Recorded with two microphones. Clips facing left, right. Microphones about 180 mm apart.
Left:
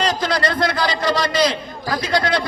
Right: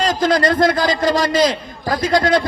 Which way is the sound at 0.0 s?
45° right (ahead or behind).